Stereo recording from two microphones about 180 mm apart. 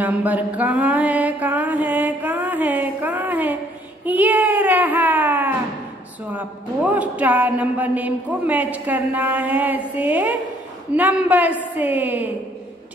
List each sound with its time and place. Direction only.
0.0 s speech: 10° right (ahead or behind)